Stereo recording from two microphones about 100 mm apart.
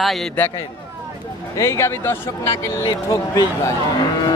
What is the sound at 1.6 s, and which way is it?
Speech, 30° left (ahead or behind).